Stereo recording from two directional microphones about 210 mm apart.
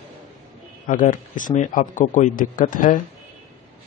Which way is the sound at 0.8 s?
40° left (ahead or behind).